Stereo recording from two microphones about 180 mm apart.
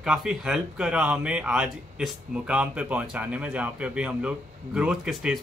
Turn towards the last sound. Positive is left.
turn(degrees=-5)  # may be behind; listen again after turning